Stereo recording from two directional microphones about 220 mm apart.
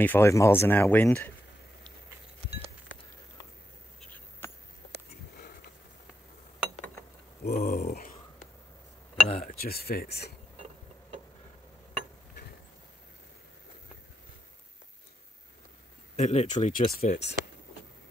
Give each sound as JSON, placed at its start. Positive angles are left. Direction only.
{"t": 0.0, "sound": "speech", "side_deg": 10}
{"t": 4.4, "sound": "a sound", "side_deg": 10}
{"t": 7.4, "sound": "speech", "side_deg": 45}
{"t": 9.1, "sound": "speech", "side_deg": 35}
{"t": 16.2, "sound": "speech", "side_deg": 30}
{"t": 17.0, "sound": "speech", "side_deg": 45}